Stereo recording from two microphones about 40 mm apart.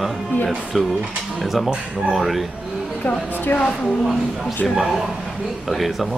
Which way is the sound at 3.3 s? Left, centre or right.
Left.